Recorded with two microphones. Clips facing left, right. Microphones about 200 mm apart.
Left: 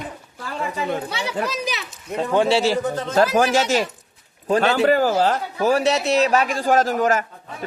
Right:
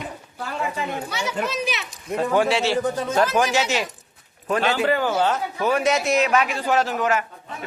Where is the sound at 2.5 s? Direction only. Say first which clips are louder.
Left 2 dB; 35° left (ahead or behind).